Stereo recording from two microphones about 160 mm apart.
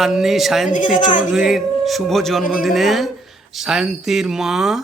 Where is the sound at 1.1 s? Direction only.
55° left (ahead or behind).